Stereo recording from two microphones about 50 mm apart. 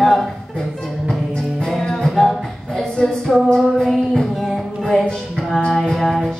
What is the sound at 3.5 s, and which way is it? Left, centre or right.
Speech, centre.